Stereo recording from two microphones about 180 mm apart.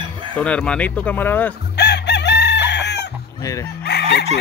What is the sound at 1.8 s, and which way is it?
Chicken, 70° left (ahead or behind).